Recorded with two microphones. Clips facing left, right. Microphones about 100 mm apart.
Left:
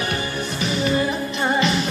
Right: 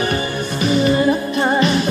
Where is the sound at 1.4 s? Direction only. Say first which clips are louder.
Right 1 dB; 45° right (ahead or behind).